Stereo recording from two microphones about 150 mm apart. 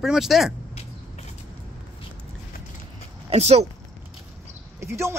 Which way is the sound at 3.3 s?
45° right (ahead or behind).